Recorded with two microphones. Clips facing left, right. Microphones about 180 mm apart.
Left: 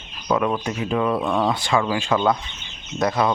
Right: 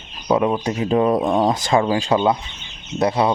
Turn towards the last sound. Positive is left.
turn(degrees=-30)  # may be behind; listen again after turning